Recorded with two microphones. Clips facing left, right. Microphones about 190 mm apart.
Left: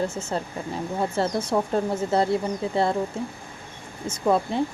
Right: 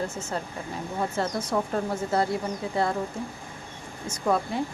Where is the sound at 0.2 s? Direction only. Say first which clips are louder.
Left 3 dB; 25° left (ahead or behind).